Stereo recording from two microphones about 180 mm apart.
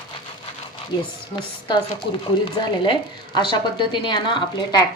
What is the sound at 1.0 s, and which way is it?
Speech, 25° left (ahead or behind).